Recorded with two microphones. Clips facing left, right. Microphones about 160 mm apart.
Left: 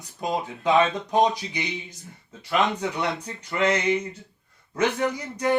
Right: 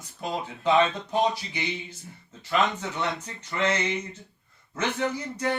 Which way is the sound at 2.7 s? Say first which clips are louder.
Left 3 dB; 15° left (ahead or behind).